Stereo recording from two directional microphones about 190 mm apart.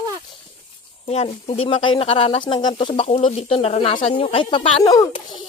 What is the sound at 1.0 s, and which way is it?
Speech, 30° left (ahead or behind).